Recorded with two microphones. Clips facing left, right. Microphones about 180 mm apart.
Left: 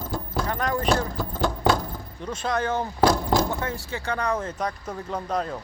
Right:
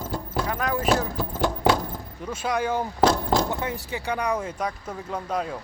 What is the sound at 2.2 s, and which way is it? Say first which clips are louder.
Speech: even; 10° right (ahead or behind).